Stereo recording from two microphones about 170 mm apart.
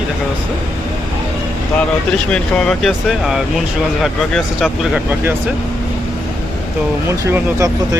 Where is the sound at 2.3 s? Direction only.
5° left (ahead or behind).